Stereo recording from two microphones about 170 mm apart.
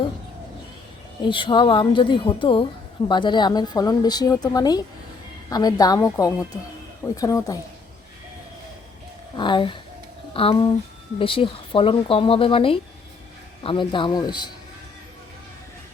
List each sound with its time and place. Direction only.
1.2 s a woman's voice: 30° left (ahead or behind)
9.3 s a woman's voice: 25° left (ahead or behind)